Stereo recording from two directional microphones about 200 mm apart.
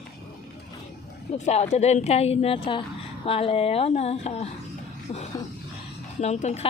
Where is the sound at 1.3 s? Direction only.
30° left (ahead or behind).